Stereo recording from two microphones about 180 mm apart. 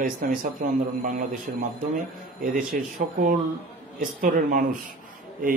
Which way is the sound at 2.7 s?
50° right (ahead or behind).